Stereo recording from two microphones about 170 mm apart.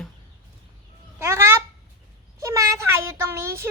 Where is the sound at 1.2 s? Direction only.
15° right (ahead or behind).